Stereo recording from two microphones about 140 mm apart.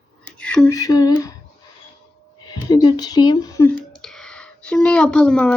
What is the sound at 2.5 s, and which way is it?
Speech, 30° left (ahead or behind).